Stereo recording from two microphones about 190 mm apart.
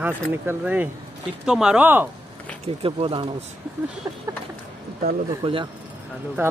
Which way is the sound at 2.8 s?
30° right (ahead or behind).